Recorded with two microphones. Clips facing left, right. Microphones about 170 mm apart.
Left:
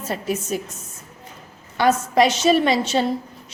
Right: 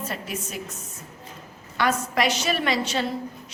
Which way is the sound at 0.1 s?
35° left (ahead or behind).